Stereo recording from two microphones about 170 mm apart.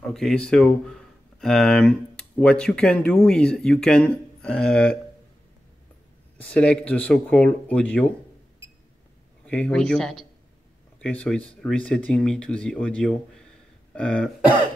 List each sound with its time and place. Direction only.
0.0 s speech: 5° left (ahead or behind)
6.3 s speech: 10° left (ahead or behind)
9.5 s speech: 5° left (ahead or behind)